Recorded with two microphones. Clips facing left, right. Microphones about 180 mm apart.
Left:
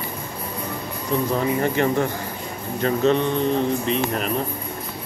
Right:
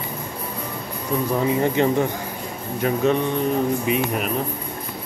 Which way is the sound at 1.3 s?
15° right (ahead or behind).